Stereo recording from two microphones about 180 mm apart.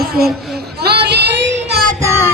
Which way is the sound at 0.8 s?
65° right (ahead or behind).